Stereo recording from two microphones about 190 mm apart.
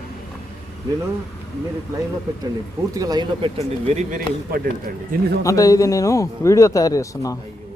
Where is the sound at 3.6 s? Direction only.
35° right (ahead or behind).